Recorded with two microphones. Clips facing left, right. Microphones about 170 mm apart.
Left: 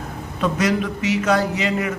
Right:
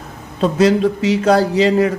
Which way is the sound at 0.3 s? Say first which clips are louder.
Right 7 dB; 30° right (ahead or behind).